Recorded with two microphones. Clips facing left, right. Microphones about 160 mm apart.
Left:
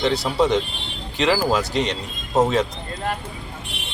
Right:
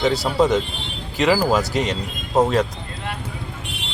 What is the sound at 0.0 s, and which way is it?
Speech, centre (ahead or behind).